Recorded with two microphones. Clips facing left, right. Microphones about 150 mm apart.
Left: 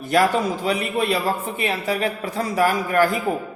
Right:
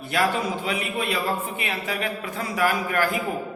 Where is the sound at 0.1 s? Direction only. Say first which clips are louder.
Left 5 dB; 40° left (ahead or behind).